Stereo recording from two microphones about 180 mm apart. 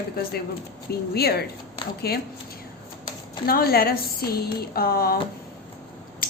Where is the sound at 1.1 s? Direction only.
60° left (ahead or behind).